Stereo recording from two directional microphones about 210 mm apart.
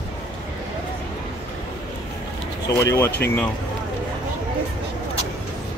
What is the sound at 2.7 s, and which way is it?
Speech, 15° left (ahead or behind).